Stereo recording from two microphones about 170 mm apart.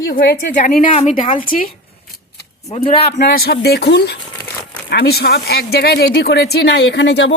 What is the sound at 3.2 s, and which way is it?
Speech, 65° left (ahead or behind).